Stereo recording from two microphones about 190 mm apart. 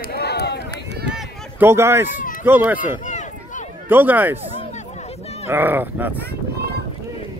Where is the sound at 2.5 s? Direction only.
10° right (ahead or behind).